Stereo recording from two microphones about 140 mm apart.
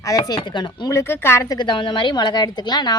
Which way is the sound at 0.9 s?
20° left (ahead or behind).